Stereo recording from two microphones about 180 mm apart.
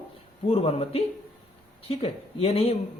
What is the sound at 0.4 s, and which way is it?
A man's voice, 35° left (ahead or behind).